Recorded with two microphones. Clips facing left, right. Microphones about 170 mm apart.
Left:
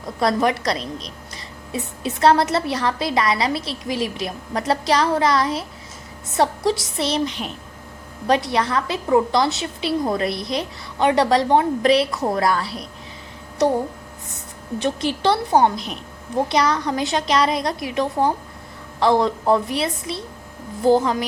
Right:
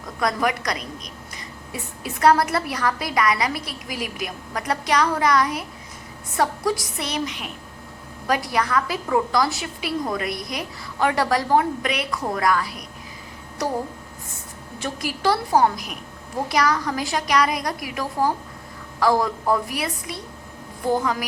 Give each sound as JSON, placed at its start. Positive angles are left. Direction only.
{"t": 0.2, "sound": "a woman's voice", "side_deg": 30}
{"t": 14.8, "sound": "a woman's voice", "side_deg": 25}